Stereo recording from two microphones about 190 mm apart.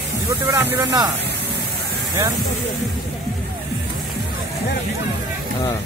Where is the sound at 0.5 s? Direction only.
15° right (ahead or behind).